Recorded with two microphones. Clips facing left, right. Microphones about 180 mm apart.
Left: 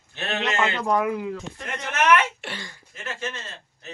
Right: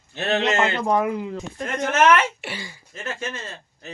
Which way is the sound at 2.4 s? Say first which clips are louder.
Right 2 dB; 5° right (ahead or behind).